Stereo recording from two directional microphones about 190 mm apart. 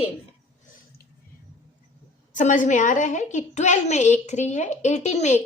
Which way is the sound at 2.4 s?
40° left (ahead or behind).